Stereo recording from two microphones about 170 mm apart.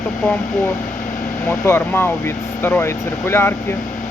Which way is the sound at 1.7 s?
15° left (ahead or behind).